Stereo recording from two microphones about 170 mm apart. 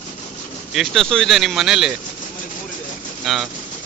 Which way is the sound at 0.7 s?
Centre (ahead or behind).